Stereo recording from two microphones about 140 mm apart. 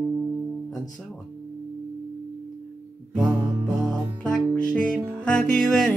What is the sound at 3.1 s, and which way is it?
Music, 20° right (ahead or behind).